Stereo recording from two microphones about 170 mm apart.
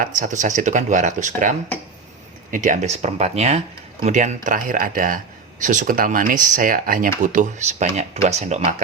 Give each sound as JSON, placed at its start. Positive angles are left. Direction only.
{"t": 0.0, "sound": "speech", "side_deg": -50}